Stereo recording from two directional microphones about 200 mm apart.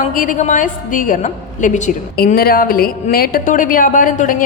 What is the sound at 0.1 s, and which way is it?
A woman's voice, 40° left (ahead or behind).